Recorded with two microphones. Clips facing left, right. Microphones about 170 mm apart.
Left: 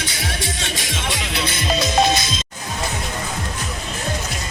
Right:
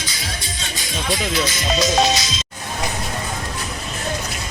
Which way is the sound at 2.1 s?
55° left (ahead or behind).